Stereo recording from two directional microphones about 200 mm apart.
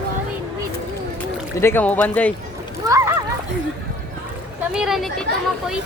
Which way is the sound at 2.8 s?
15° right (ahead or behind).